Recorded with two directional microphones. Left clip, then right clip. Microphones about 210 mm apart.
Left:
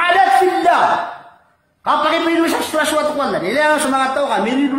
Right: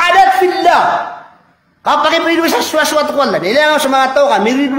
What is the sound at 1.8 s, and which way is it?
A man's voice, 45° right (ahead or behind).